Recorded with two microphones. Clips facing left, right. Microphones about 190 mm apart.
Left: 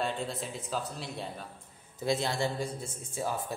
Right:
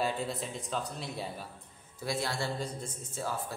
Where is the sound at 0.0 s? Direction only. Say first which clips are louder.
Right 1 dB; centre (ahead or behind).